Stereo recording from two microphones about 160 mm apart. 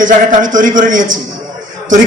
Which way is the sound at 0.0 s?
55° right (ahead or behind).